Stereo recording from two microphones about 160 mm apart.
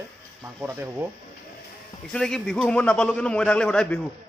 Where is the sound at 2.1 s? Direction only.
5° left (ahead or behind).